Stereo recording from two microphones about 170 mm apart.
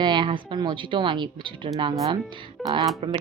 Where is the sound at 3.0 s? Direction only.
30° right (ahead or behind).